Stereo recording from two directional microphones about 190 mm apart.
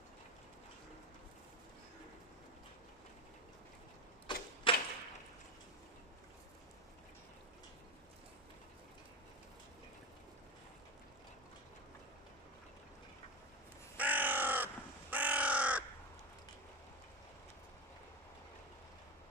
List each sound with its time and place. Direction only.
4.3 s typewriter: 25° left (ahead or behind)
4.7 s arrow: 25° left (ahead or behind)
13.9 s crow: 10° right (ahead or behind)